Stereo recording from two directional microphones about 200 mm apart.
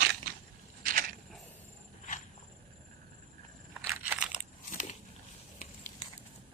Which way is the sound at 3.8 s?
10° right (ahead or behind).